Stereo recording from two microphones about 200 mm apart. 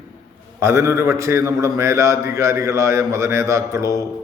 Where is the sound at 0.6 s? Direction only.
15° right (ahead or behind).